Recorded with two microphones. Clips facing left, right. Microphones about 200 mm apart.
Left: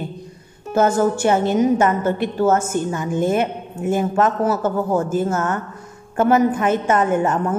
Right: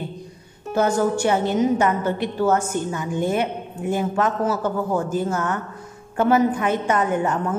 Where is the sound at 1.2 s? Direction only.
50° left (ahead or behind).